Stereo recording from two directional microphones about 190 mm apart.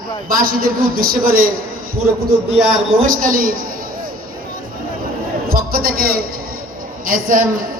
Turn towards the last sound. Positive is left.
turn(degrees=-45)  # may be behind; listen again after turning